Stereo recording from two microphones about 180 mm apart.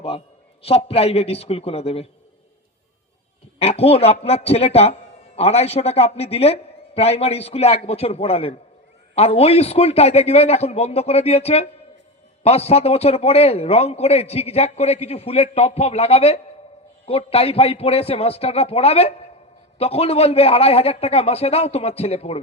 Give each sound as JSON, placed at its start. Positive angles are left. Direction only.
{"t": 0.6, "sound": "a man's voice", "side_deg": 35}
{"t": 3.6, "sound": "a man's voice", "side_deg": 35}